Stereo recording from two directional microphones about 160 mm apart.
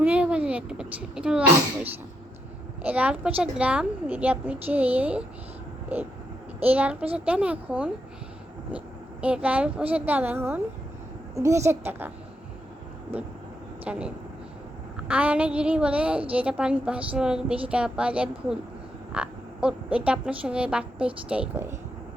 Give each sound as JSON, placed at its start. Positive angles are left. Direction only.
{"t": 0.0, "sound": "a woman's voice", "side_deg": -10}
{"t": 6.6, "sound": "a woman's voice", "side_deg": -10}
{"t": 9.2, "sound": "a woman's voice", "side_deg": -10}
{"t": 13.8, "sound": "a woman's voice", "side_deg": -5}